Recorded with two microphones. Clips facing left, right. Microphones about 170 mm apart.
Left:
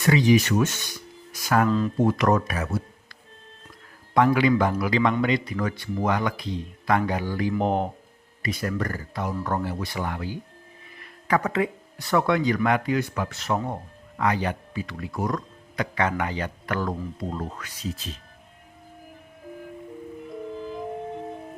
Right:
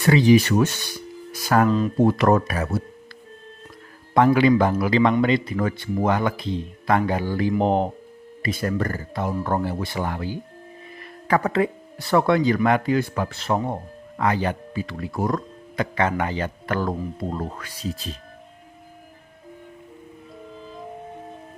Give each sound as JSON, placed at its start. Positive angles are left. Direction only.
{"t": 0.0, "sound": "speech", "side_deg": -30}
{"t": 4.1, "sound": "speech", "side_deg": -30}